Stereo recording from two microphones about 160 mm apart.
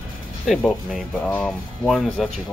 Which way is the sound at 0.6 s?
5° left (ahead or behind).